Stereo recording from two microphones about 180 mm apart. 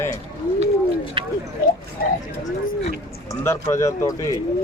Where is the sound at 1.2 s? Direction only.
30° right (ahead or behind).